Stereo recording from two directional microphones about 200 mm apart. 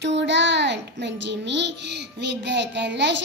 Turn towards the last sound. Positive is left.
turn(degrees=-60)  # may be behind; listen again after turning